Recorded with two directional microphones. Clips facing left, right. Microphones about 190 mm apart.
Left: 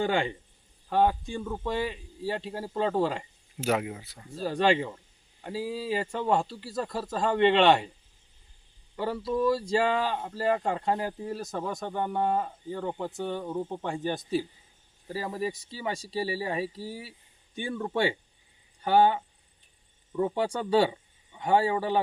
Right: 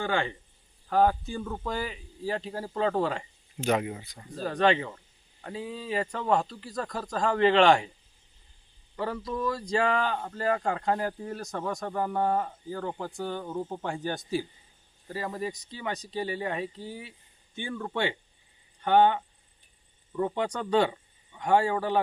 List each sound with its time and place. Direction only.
0.0 s speech: 15° left (ahead or behind)
0.9 s a man's voice: centre (ahead or behind)
9.0 s a man's voice: 5° left (ahead or behind)